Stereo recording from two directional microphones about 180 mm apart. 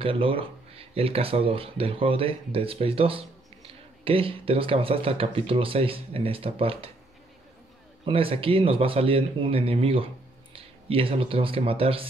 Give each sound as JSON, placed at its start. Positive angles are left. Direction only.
{"t": 0.0, "sound": "speech", "side_deg": -30}
{"t": 8.0, "sound": "speech", "side_deg": -30}